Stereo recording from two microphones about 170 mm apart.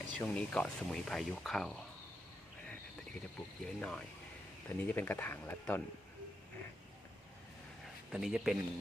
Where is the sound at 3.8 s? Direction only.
5° left (ahead or behind).